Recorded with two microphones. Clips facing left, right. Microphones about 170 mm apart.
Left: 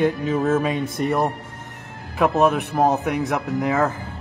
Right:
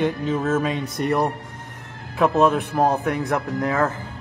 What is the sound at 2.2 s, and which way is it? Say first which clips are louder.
Speech: even; 20° left (ahead or behind).